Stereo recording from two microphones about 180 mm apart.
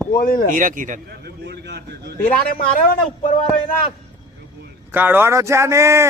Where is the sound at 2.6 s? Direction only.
50° left (ahead or behind).